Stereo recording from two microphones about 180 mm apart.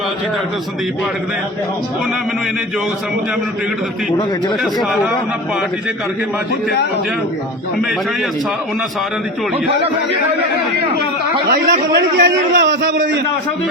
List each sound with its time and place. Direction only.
4.6 s speech: centre (ahead or behind)
11.4 s a man's voice: 65° right (ahead or behind); by 13.0 s 85° right